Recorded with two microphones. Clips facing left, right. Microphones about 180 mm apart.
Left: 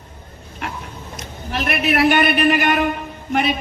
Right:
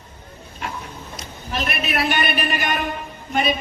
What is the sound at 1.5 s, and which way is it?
A man's voice, 60° left (ahead or behind).